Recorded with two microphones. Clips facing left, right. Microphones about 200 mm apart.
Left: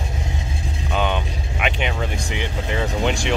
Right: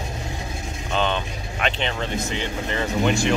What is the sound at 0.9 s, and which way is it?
Speech, 10° left (ahead or behind).